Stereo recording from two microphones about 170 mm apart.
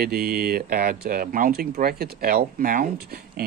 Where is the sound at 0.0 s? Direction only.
65° right (ahead or behind).